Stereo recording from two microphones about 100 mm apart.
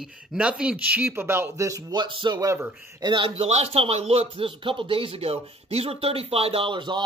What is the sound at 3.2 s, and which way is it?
Speech, 80° right.